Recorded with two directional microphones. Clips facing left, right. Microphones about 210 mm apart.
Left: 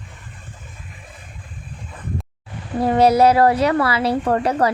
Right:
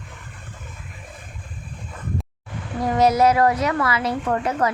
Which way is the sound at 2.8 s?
30° left (ahead or behind).